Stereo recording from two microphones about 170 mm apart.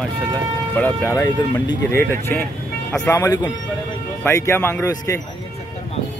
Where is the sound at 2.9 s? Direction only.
15° left (ahead or behind).